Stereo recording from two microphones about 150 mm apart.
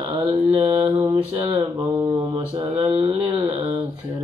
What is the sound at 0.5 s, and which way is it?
Mantra, 40° right (ahead or behind).